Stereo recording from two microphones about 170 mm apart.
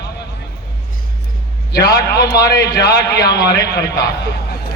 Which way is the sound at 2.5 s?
90° left.